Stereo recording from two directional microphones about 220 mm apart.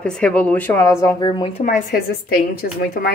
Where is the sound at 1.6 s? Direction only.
40° left (ahead or behind).